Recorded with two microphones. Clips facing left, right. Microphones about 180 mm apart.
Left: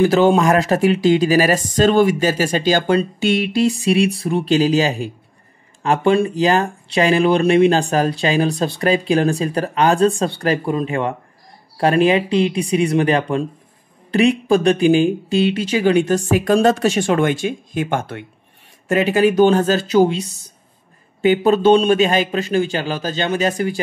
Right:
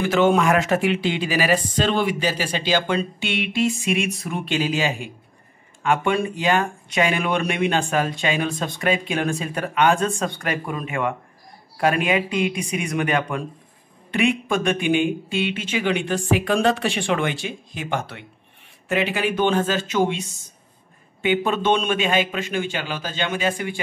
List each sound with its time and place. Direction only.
0.0 s speech: 35° left (ahead or behind)